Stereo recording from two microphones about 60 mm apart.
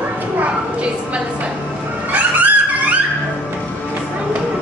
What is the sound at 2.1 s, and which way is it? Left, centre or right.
Music, right.